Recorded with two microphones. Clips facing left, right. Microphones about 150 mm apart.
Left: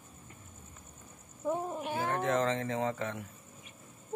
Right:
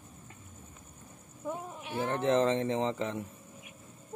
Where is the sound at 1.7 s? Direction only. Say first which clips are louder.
Left 5 dB; 45° left (ahead or behind).